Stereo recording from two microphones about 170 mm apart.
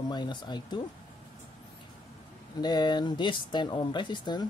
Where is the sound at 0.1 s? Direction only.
25° left (ahead or behind).